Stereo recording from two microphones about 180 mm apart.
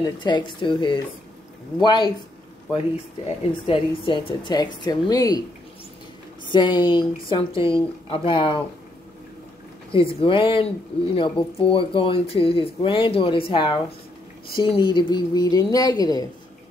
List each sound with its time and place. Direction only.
0.0 s speech: 25° left (ahead or behind)
3.3 s speech: 30° left (ahead or behind)
6.5 s speech: 25° left (ahead or behind)
9.9 s speech: 30° left (ahead or behind)